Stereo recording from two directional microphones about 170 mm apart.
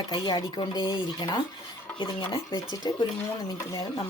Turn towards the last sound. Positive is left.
turn(degrees=25)  # may be behind; listen again after turning